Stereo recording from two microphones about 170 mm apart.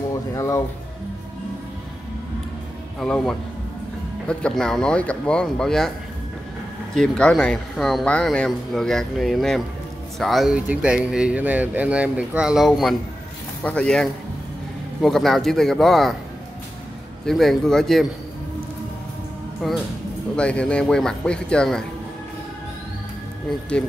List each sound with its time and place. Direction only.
0.1 s music: 20° left (ahead or behind)
3.0 s speech: 5° left (ahead or behind)
7.0 s speech: 5° left (ahead or behind)
17.3 s speech: centre (ahead or behind)
19.6 s speech: centre (ahead or behind)